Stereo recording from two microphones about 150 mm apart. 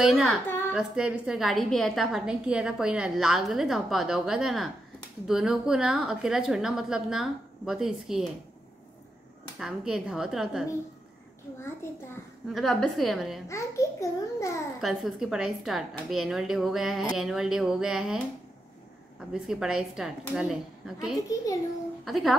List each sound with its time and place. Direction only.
0.0 s a woman's voice: centre (ahead or behind)
0.5 s a sound: 15° left (ahead or behind)
0.7 s a woman's voice: 5° right (ahead or behind)
9.6 s a woman's voice: 5° right (ahead or behind)
12.5 s a woman's voice: centre (ahead or behind)
13.5 s a child's voice: 20° left (ahead or behind)
14.8 s a woman's voice: centre (ahead or behind)